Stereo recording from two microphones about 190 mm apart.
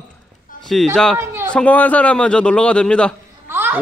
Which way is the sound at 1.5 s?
5° left (ahead or behind).